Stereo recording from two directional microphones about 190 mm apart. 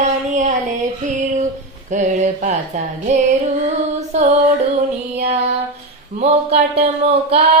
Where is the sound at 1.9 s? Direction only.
40° right (ahead or behind).